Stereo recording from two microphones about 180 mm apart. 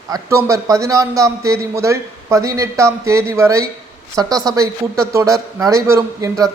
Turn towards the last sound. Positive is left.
turn(degrees=-20)  # may be behind; listen again after turning